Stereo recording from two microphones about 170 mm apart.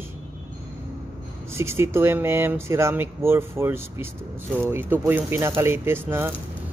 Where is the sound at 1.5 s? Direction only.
15° right (ahead or behind).